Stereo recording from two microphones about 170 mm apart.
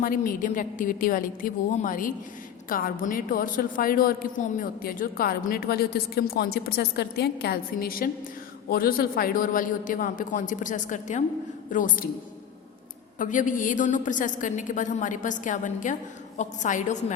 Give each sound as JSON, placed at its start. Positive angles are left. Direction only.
{"t": 0.0, "sound": "a woman's voice", "side_deg": 55}
{"t": 13.1, "sound": "a woman's voice", "side_deg": 50}